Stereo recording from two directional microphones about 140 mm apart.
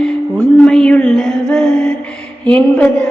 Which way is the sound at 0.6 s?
5° left (ahead or behind).